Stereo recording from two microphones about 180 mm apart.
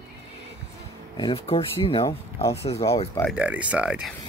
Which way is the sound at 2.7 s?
15° left (ahead or behind).